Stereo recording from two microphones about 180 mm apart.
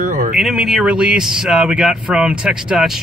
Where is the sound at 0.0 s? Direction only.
50° right (ahead or behind).